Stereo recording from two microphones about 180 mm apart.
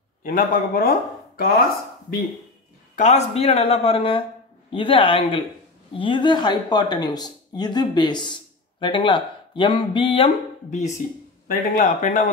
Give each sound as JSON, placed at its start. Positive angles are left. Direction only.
{"t": 0.2, "sound": "speech", "side_deg": 50}
{"t": 3.0, "sound": "speech", "side_deg": 40}
{"t": 10.7, "sound": "speech", "side_deg": 40}